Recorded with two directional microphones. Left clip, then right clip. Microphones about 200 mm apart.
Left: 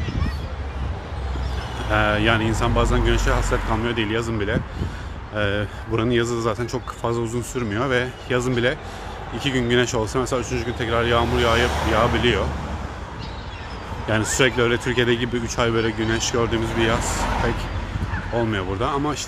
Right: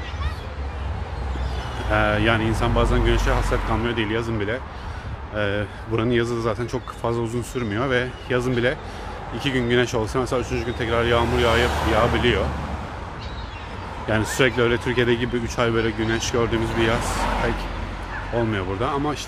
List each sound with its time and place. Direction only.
1.9 s a man's voice: centre (ahead or behind)
14.0 s a man's voice: centre (ahead or behind)
18.5 s a man's voice: centre (ahead or behind)